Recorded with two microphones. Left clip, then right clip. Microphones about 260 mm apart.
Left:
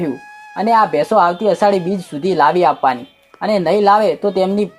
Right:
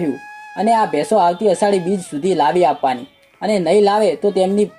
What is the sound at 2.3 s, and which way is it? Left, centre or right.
Speech, centre.